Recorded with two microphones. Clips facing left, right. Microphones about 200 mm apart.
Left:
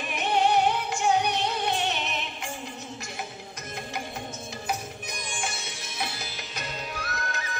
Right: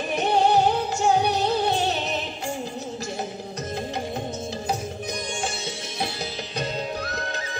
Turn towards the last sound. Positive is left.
turn(degrees=-30)  # may be behind; listen again after turning